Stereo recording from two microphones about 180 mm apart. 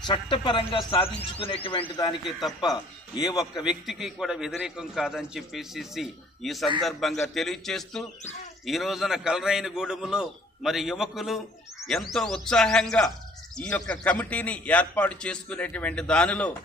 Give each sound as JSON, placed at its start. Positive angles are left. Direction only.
{"t": 0.0, "sound": "speech", "side_deg": 25}
{"t": 3.3, "sound": "speech", "side_deg": 20}
{"t": 3.6, "sound": "a man's voice", "side_deg": 0}